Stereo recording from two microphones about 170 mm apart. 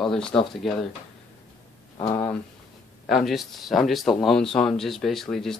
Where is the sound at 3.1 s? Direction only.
Centre (ahead or behind).